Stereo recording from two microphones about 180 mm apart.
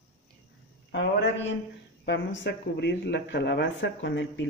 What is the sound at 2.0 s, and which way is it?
Speech, 90° left.